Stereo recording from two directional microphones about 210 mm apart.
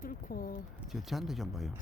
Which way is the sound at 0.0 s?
40° left (ahead or behind).